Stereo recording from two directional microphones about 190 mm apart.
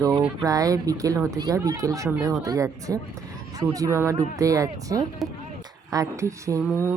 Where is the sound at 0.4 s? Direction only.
20° right (ahead or behind).